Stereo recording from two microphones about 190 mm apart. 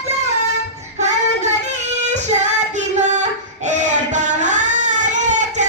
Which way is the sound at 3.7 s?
40° right (ahead or behind).